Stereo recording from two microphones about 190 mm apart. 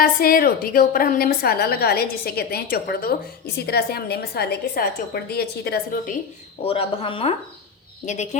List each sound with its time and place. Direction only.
0.0 s a woman's voice: 50° left (ahead or behind)
6.6 s speech: 30° left (ahead or behind)